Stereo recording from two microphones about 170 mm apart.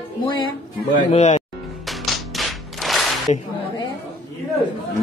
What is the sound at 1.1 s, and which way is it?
Speech, 40° left (ahead or behind).